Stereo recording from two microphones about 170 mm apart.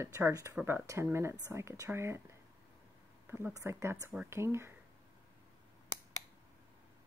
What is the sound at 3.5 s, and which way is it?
Speech, 15° right (ahead or behind).